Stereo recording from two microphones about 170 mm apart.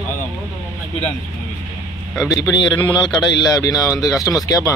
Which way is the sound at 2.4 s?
25° left (ahead or behind).